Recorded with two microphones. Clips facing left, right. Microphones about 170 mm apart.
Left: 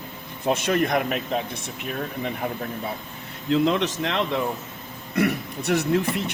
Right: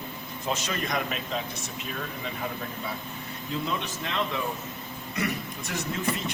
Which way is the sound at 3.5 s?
90° left.